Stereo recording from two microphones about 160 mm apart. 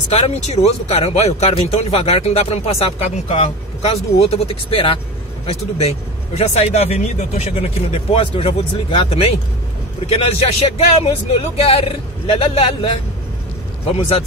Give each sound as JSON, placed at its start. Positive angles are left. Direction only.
{"t": 0.1, "sound": "speech", "side_deg": 45}